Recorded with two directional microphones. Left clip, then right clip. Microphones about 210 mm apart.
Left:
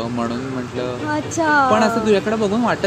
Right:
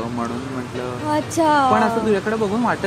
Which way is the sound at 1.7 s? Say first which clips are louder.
Left 2 dB; 45° left (ahead or behind).